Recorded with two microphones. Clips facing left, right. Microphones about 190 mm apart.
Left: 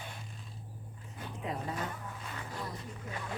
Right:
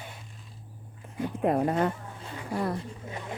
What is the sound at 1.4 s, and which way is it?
Speech, 60° right (ahead or behind).